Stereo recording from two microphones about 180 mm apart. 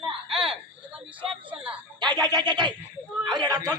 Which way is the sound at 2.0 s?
25° right (ahead or behind).